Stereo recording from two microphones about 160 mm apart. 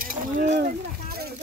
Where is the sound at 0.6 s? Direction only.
70° right (ahead or behind).